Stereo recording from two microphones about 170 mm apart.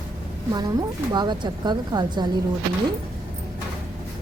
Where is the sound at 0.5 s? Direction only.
25° right (ahead or behind).